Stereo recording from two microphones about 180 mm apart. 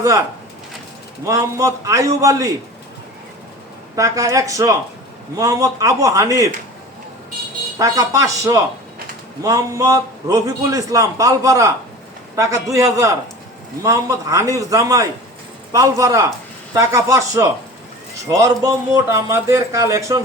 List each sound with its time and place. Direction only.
1.2 s a man's voice: 15° right (ahead or behind)
3.9 s a man's voice: 20° right (ahead or behind)
7.8 s a man's voice: 20° right (ahead or behind)